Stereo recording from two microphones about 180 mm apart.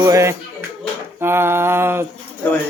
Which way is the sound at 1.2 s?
15° right (ahead or behind).